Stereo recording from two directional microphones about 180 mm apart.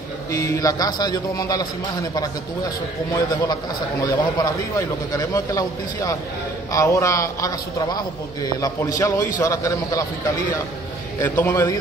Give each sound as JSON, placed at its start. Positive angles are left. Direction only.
{"t": 0.3, "sound": "a man's voice", "side_deg": 15}
{"t": 4.0, "sound": "a man's voice", "side_deg": 20}
{"t": 11.1, "sound": "a man's voice", "side_deg": 10}